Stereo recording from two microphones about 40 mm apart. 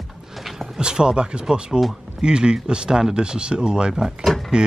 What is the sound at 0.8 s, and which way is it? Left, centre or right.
Speech, centre.